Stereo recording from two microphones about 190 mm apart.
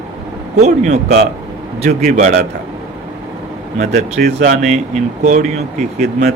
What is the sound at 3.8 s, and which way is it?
Speech, 40° right (ahead or behind).